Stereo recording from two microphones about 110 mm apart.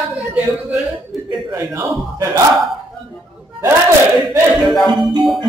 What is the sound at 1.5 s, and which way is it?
Speech, 25° right (ahead or behind).